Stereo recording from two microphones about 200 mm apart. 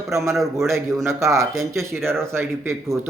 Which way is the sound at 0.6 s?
15° right (ahead or behind).